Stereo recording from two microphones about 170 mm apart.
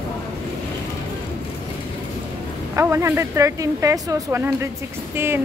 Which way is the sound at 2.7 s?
15° right (ahead or behind).